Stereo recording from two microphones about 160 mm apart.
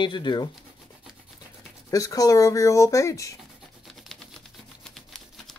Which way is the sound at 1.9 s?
20° left (ahead or behind).